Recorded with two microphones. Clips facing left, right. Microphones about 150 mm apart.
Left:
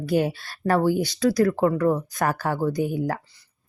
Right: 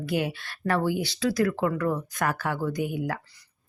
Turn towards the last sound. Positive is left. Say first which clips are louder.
# left 4 dB
turn(degrees=35)  # may be behind; listen again after turning